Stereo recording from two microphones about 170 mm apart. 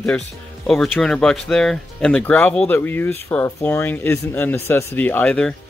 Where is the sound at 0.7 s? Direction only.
5° left (ahead or behind).